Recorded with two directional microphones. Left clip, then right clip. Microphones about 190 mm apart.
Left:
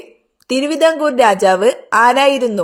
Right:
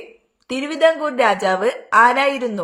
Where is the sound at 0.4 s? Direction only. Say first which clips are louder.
Left 3 dB; 35° left (ahead or behind).